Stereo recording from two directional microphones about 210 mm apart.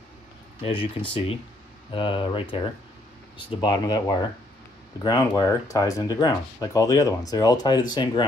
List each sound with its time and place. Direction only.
0.7 s speech: 25° left (ahead or behind)